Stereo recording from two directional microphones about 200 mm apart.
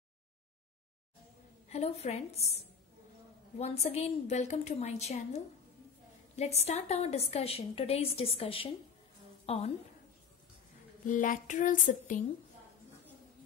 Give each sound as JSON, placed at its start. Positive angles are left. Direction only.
{"t": 1.7, "sound": "a woman's voice", "side_deg": 30}
{"t": 3.5, "sound": "a woman's voice", "side_deg": 30}
{"t": 11.1, "sound": "a woman's voice", "side_deg": 40}